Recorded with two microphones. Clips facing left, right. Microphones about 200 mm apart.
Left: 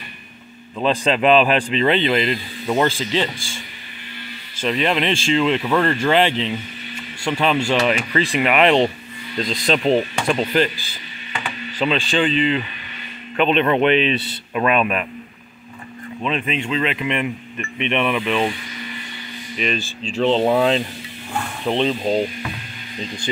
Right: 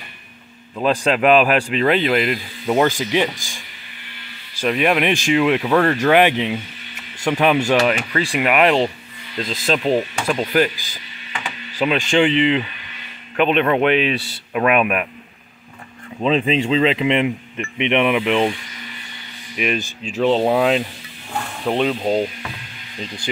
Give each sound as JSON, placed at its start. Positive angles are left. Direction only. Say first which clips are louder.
{"t": 0.7, "sound": "speech", "louder": "right 1 dB", "side_deg": -5}
{"t": 4.6, "sound": "speech", "louder": "right 2 dB", "side_deg": -10}
{"t": 5.7, "sound": "speech", "louder": "right 2 dB", "side_deg": 0}
{"t": 6.0, "sound": "speech", "louder": "right 3 dB", "side_deg": -15}
{"t": 16.2, "sound": "speech", "louder": "right 6 dB", "side_deg": -30}
{"t": 19.5, "sound": "speech", "louder": "right 2 dB", "side_deg": -15}